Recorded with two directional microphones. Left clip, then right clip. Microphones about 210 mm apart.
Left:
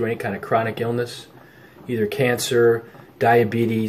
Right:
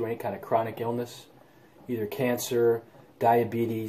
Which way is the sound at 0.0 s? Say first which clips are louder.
Left 7 dB; centre (ahead or behind).